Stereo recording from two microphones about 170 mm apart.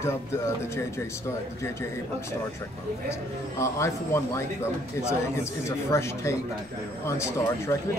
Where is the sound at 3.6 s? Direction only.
15° left (ahead or behind).